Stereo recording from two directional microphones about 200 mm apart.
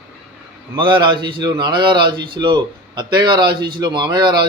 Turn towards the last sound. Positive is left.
turn(degrees=-20)  # may be behind; listen again after turning